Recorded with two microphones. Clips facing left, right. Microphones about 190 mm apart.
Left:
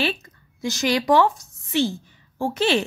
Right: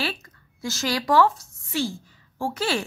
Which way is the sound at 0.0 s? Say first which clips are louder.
Left 5 dB; 20° left (ahead or behind).